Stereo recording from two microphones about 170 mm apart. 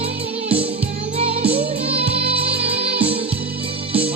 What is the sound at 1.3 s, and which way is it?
Music, 35° right (ahead or behind).